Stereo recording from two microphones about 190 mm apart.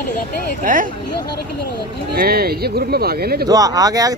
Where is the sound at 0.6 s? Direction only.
45° right (ahead or behind).